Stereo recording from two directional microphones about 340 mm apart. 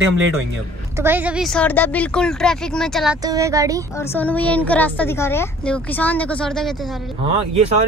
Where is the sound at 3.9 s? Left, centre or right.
Centre.